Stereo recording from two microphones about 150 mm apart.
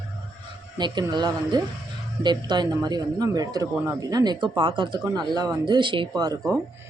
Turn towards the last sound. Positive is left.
turn(degrees=-25)  # may be behind; listen again after turning